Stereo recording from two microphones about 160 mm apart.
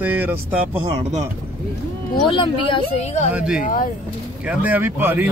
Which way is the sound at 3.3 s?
5° right (ahead or behind).